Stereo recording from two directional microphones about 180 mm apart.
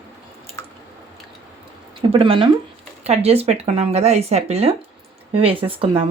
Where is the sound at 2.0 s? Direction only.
30° right (ahead or behind).